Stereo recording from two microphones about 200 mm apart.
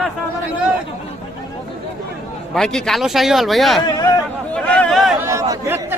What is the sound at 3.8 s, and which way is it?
Speech, 20° left (ahead or behind).